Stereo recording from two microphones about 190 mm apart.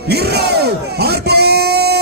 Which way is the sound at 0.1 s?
60° right (ahead or behind).